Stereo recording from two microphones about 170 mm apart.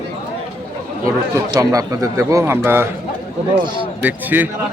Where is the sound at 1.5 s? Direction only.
20° right (ahead or behind).